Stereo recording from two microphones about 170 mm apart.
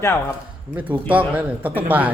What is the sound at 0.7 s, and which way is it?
Speech, 10° right (ahead or behind).